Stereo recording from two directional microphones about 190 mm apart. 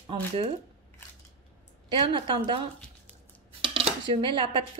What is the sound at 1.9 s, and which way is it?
Speech, 25° right (ahead or behind).